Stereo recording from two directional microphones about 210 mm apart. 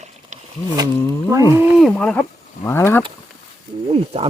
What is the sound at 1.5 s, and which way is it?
Speech, 5° right (ahead or behind).